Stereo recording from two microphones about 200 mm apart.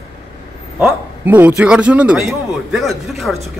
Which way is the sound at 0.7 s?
5° right (ahead or behind).